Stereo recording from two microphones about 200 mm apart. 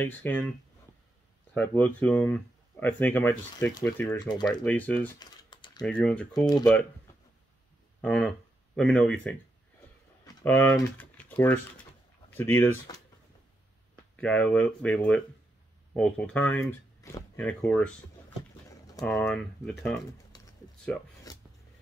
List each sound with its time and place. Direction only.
0.0 s speech: 10° left (ahead or behind)
1.5 s speech: 10° left (ahead or behind)
4.3 s speech: 20° left (ahead or behind)
4.6 s speech: 5° left (ahead or behind)
5.2 s typing: 20° left (ahead or behind)
5.8 s speech: 5° left (ahead or behind)
6.3 s speech: 20° left (ahead or behind)
8.0 s speech: 5° left (ahead or behind)
14.1 s speech: 5° left (ahead or behind)
19.0 s speech: centre (ahead or behind)
20.3 s typing: 20° left (ahead or behind)
20.9 s speech: 5° left (ahead or behind)
21.3 s filing: 20° left (ahead or behind)